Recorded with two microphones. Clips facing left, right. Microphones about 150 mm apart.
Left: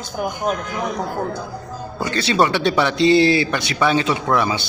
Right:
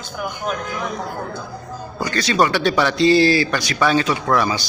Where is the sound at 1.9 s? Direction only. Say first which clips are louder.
Even; 25° left (ahead or behind).